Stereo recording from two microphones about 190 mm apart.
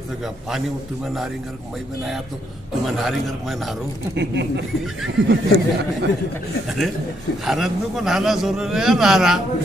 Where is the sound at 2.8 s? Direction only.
Centre (ahead or behind).